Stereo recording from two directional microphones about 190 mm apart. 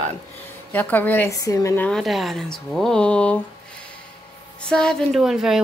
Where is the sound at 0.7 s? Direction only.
10° left (ahead or behind).